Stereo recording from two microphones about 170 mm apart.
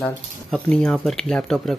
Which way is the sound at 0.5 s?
5° left (ahead or behind).